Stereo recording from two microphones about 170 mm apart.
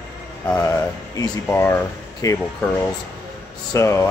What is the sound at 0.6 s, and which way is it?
Speech, 20° left (ahead or behind).